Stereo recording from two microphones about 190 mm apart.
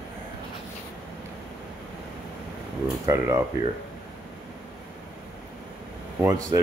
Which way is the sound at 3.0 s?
15° right (ahead or behind).